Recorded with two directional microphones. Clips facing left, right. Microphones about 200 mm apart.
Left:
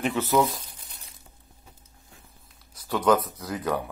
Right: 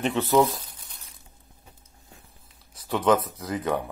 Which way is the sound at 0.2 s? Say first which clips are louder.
Right 3 dB; 15° right (ahead or behind).